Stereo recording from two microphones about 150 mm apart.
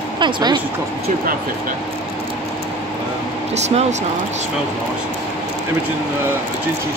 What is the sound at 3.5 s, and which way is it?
Speech, 45° right (ahead or behind).